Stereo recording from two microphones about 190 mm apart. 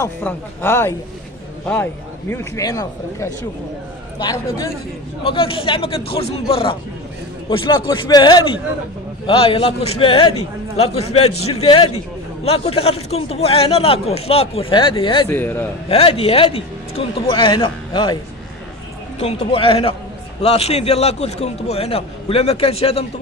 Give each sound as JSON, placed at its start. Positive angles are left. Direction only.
{"t": 0.0, "sound": "a man's voice", "side_deg": 10}
{"t": 5.2, "sound": "a man's voice", "side_deg": 30}
{"t": 15.2, "sound": "a man's voice", "side_deg": 10}
{"t": 15.9, "sound": "a man's voice", "side_deg": 30}